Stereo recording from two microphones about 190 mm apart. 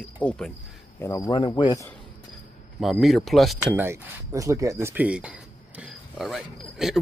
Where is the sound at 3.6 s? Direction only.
10° right (ahead or behind).